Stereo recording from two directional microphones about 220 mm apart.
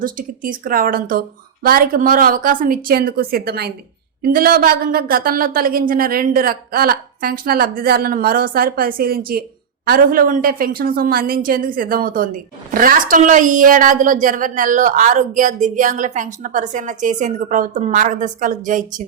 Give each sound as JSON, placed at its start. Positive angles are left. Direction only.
{"t": 0.0, "sound": "a woman's voice", "side_deg": -40}